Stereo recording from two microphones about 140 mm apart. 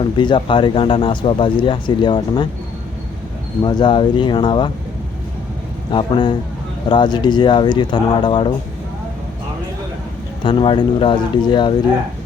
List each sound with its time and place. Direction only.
0.0 s speech: 35° left (ahead or behind)
3.6 s speech: 30° left (ahead or behind)
5.9 s speech: 35° left (ahead or behind)
10.4 s speech: 35° left (ahead or behind)